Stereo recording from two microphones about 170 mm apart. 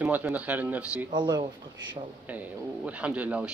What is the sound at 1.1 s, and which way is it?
Speech, 25° right (ahead or behind).